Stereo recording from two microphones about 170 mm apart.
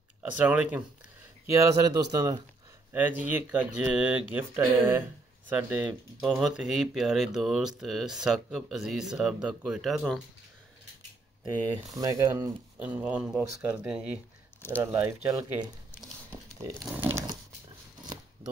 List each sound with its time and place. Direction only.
0.2 s speech: 10° right (ahead or behind)
11.9 s speech: 20° right (ahead or behind)
12.7 s speech: 10° right (ahead or behind)
14.6 s speech: 15° left (ahead or behind)
15.0 s speech: 10° right (ahead or behind)
16.3 s a sound: 15° right (ahead or behind)
16.8 s speech: 10° right (ahead or behind)